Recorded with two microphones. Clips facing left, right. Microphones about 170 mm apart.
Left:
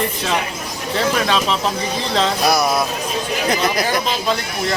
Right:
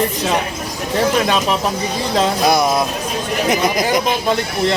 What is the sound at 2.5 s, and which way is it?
A man's voice, 20° right (ahead or behind).